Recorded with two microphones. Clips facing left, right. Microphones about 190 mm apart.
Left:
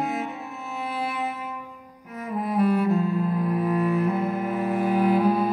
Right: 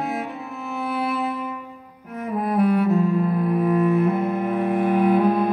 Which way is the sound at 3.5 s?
55° right (ahead or behind).